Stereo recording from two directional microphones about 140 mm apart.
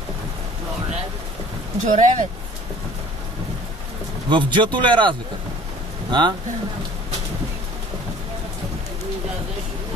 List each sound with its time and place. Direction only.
1.9 s speech: 65° right (ahead or behind)
4.3 s speech: 35° right (ahead or behind)